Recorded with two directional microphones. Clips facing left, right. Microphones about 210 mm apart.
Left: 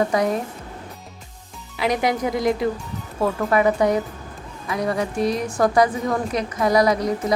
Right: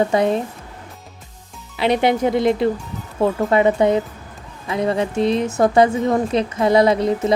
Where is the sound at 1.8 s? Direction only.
25° right (ahead or behind).